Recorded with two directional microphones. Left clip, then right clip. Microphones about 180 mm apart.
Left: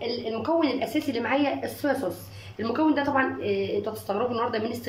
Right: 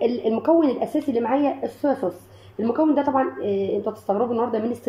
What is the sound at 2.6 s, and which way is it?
A woman's voice, 20° right (ahead or behind).